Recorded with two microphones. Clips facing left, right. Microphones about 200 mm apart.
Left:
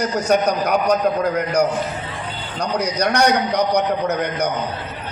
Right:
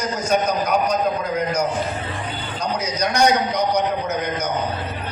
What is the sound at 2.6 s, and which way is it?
A man's voice, 65° left (ahead or behind).